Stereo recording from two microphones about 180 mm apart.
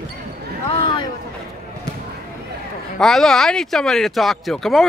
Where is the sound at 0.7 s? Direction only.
25° left (ahead or behind).